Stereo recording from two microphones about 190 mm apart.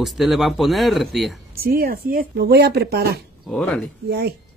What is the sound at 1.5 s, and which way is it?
Speech, 55° right (ahead or behind).